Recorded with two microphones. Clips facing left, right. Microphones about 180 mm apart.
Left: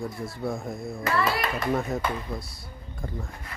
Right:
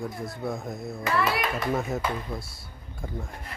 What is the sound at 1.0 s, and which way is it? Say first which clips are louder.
A man's voice: even; centre (ahead or behind).